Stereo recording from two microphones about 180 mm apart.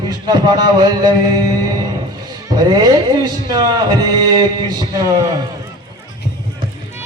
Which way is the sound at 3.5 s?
20° right (ahead or behind).